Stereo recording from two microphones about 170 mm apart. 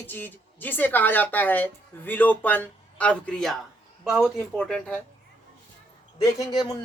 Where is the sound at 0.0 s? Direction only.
10° left (ahead or behind).